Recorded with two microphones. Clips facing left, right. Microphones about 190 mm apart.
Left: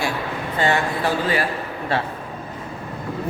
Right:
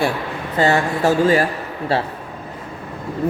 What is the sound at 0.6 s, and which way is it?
Speech, 40° right (ahead or behind).